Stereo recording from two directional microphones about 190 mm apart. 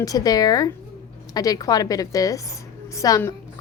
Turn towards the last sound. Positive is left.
turn(degrees=15)  # may be behind; listen again after turning